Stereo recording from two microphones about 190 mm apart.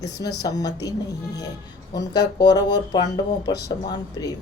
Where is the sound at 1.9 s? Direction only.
20° left (ahead or behind).